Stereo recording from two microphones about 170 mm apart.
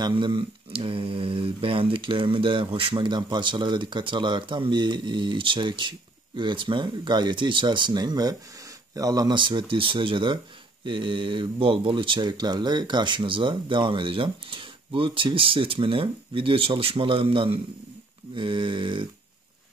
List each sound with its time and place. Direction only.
0.0 s speech: 25° right (ahead or behind)